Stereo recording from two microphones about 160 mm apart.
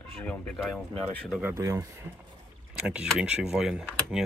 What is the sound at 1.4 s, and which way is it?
Speech, 15° right (ahead or behind).